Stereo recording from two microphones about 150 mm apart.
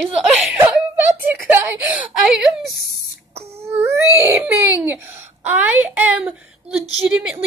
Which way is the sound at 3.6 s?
15° right (ahead or behind).